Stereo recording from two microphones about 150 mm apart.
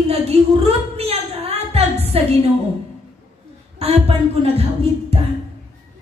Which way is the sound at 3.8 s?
40° right (ahead or behind).